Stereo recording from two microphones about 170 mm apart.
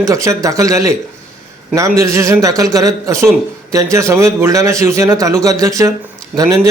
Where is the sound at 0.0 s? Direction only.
20° right (ahead or behind).